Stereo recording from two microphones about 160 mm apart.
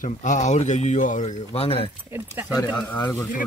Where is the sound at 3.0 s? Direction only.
20° left (ahead or behind).